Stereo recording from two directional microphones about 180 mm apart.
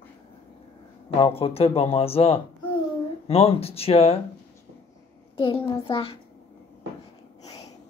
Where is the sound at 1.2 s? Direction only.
30° left (ahead or behind).